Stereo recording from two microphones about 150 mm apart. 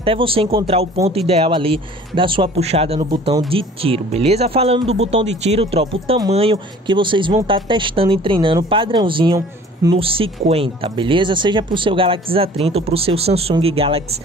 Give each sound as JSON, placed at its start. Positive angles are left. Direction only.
{"t": 0.0, "sound": "speech", "side_deg": -35}